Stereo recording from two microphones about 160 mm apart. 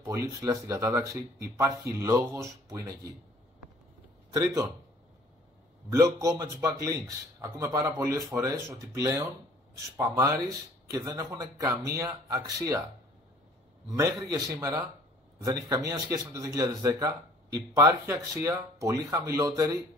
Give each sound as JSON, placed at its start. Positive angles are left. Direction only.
{"t": 0.0, "sound": "speech", "side_deg": -20}
{"t": 4.3, "sound": "a man's voice", "side_deg": -20}
{"t": 5.9, "sound": "speech", "side_deg": -20}
{"t": 9.9, "sound": "speech", "side_deg": -20}
{"t": 13.8, "sound": "speech", "side_deg": -20}